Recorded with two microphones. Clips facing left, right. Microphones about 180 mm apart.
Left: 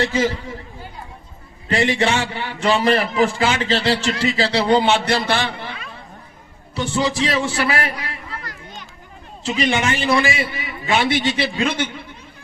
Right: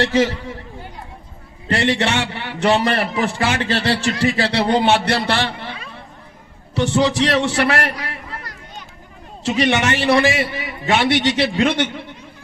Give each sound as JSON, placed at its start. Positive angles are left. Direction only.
{"t": 0.0, "sound": "a man's voice", "side_deg": -70}
{"t": 1.7, "sound": "a man's voice", "side_deg": -70}
{"t": 6.7, "sound": "a man's voice", "side_deg": -70}
{"t": 9.4, "sound": "a man's voice", "side_deg": -65}